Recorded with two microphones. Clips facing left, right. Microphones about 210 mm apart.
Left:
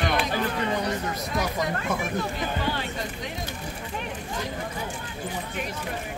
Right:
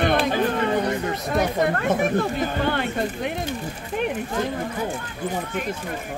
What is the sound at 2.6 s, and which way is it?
Speech, 60° right (ahead or behind).